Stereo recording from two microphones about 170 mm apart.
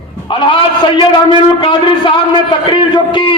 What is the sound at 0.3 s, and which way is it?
A man's voice, 30° left (ahead or behind).